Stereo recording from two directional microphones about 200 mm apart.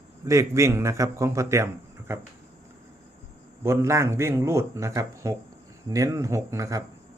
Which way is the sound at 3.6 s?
15° right (ahead or behind).